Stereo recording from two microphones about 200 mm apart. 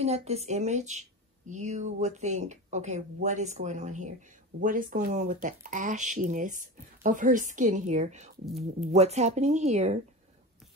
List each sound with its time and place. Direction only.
0.0 s speech: 30° right (ahead or behind)